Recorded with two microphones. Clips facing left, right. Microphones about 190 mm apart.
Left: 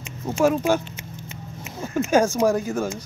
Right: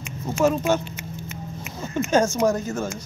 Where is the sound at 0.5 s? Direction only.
10° left (ahead or behind).